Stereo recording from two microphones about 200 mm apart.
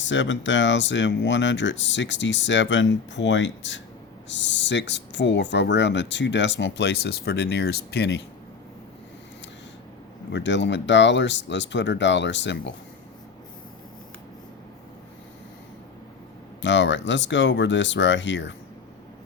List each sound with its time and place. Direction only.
0.0 s speech: 65° left (ahead or behind)
10.3 s speech: 65° left (ahead or behind)
16.6 s speech: 65° left (ahead or behind)